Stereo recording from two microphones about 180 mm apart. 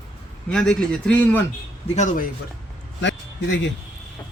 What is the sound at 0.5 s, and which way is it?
Speech, 5° left (ahead or behind).